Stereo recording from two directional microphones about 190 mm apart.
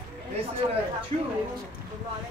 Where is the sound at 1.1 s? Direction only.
35° right (ahead or behind).